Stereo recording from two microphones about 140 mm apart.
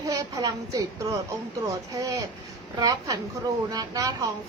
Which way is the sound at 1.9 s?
25° right (ahead or behind).